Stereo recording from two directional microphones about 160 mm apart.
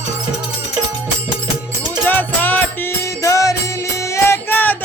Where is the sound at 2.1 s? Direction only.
10° left (ahead or behind).